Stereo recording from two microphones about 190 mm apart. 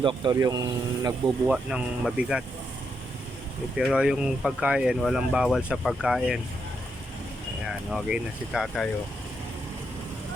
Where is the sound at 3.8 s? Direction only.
5° right (ahead or behind).